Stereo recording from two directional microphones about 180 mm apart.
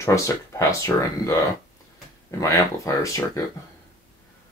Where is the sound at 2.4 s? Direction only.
20° left (ahead or behind).